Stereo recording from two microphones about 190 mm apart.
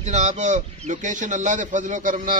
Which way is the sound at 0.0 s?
40° right (ahead or behind).